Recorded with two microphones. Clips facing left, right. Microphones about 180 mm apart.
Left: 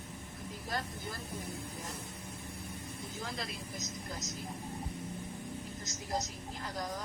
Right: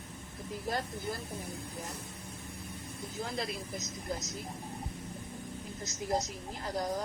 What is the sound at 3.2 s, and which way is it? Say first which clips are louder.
Speech: right 5 dB; 35° right (ahead or behind).